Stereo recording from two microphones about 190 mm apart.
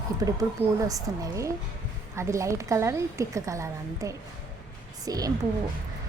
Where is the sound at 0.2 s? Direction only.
20° right (ahead or behind).